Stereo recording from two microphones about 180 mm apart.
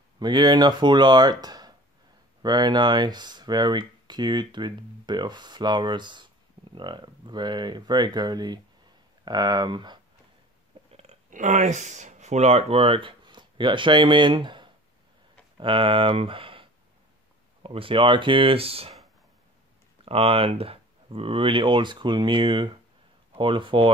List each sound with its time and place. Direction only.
0.2 s speech: 25° right (ahead or behind)
10.9 s speech: 35° right (ahead or behind)
17.6 s speech: 30° right (ahead or behind)
20.1 s speech: 30° right (ahead or behind)